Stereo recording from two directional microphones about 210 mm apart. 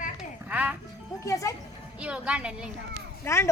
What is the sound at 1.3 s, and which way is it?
Speech, 15° left (ahead or behind).